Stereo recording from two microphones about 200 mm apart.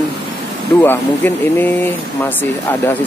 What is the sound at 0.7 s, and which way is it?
Speech, 10° left (ahead or behind).